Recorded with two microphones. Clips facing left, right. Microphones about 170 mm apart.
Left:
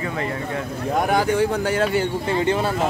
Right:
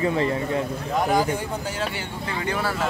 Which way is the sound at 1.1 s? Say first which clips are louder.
Left 4 dB; 75° left (ahead or behind).